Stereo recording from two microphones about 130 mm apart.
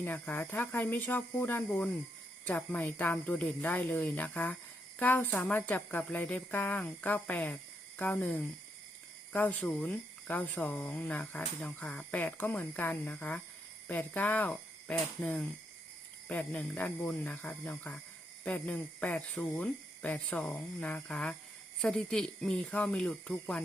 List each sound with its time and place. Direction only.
0.0 s speech: 15° left (ahead or behind)